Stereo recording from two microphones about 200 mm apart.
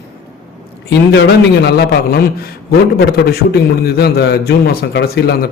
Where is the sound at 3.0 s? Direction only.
55° left (ahead or behind).